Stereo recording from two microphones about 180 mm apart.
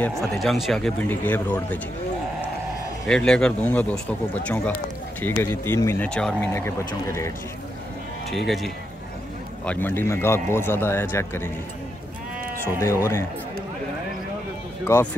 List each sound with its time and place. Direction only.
0.2 s a man's voice: centre (ahead or behind)
3.1 s a man's voice: 5° left (ahead or behind)
8.3 s a man's voice: centre (ahead or behind)
9.7 s a man's voice: 10° left (ahead or behind)
12.8 s a man's voice: 15° left (ahead or behind)
14.9 s a man's voice: 15° left (ahead or behind)